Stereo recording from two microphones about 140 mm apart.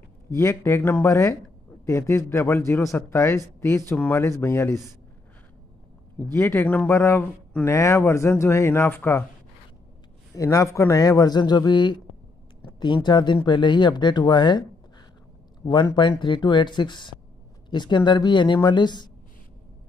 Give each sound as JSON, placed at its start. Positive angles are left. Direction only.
{"t": 0.3, "sound": "a man's voice", "side_deg": 20}
{"t": 6.3, "sound": "a man's voice", "side_deg": 15}
{"t": 10.3, "sound": "a man's voice", "side_deg": 25}
{"t": 15.6, "sound": "speech", "side_deg": 30}